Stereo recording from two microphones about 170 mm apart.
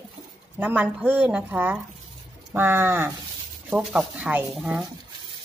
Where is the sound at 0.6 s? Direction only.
10° right (ahead or behind).